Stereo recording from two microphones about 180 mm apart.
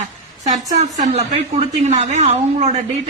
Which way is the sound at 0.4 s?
40° right (ahead or behind).